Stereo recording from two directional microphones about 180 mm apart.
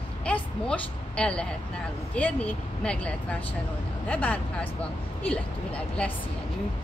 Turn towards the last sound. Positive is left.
turn(degrees=5)  # may be behind; listen again after turning